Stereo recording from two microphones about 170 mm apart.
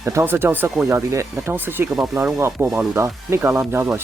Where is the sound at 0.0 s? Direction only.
15° right (ahead or behind).